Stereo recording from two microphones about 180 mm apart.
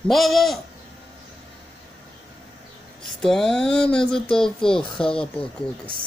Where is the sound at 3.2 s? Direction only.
5° left (ahead or behind).